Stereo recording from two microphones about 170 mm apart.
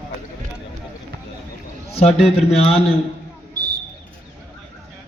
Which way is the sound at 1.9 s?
35° left (ahead or behind).